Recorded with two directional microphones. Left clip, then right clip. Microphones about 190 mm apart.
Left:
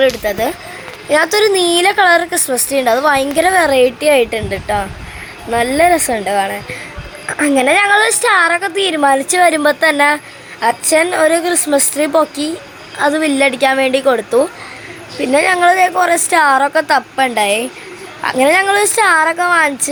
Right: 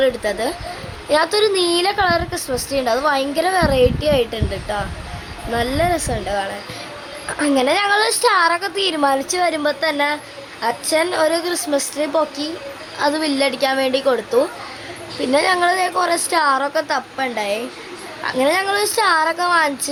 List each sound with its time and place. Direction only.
0.0 s a woman's voice: 10° left (ahead or behind)